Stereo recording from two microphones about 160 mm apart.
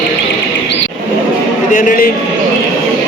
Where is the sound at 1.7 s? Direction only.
60° left (ahead or behind).